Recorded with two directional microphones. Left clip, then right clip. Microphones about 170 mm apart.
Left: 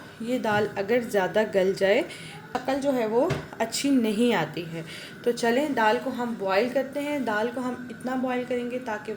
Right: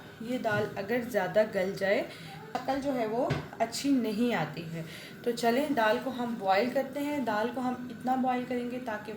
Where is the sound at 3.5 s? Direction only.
60° left (ahead or behind).